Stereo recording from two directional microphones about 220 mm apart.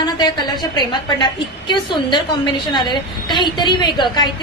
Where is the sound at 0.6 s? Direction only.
20° left (ahead or behind).